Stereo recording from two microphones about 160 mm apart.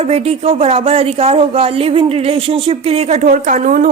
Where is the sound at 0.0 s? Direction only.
40° right (ahead or behind).